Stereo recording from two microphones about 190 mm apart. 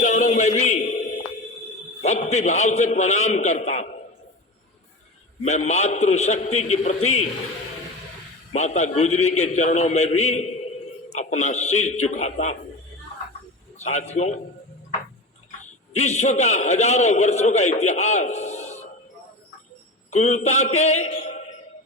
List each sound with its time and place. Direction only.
0.0 s music: 40° left (ahead or behind)
2.0 s a man's voice: 35° left (ahead or behind)
5.4 s a man's voice: 35° left (ahead or behind)
8.5 s a man's voice: 35° left (ahead or behind)
13.7 s a man's voice: 35° left (ahead or behind)
16.0 s a man's voice: 35° left (ahead or behind)
20.1 s a man's voice: 35° left (ahead or behind)